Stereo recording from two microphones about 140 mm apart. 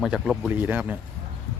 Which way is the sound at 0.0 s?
5° right (ahead or behind).